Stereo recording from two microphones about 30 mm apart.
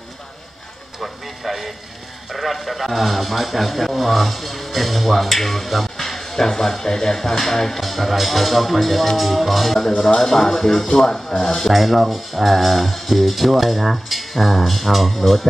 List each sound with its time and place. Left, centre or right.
1.0 s speech: centre
5.9 s music: centre
6.8 s speech: left
7.8 s speech: centre
11.6 s speech: centre